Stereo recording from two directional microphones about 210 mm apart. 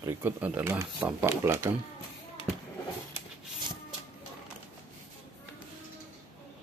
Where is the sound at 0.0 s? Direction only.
10° right (ahead or behind).